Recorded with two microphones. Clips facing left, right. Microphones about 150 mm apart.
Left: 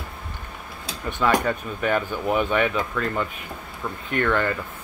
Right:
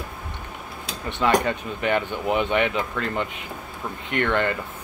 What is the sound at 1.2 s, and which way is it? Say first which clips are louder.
Speech: right 1 dB; 20° right (ahead or behind).